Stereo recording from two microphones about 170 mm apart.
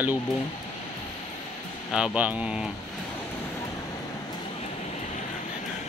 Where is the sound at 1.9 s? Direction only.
5° right (ahead or behind).